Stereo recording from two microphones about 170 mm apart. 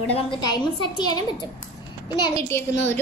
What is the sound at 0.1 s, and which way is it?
A woman's voice, 25° left (ahead or behind).